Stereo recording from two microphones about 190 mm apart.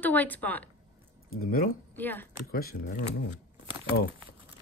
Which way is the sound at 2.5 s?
55° left (ahead or behind).